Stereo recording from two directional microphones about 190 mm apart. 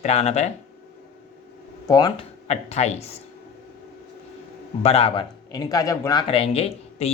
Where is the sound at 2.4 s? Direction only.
35° left (ahead or behind).